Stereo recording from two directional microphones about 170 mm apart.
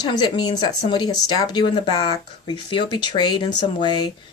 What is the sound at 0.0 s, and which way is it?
Speech, 25° left (ahead or behind).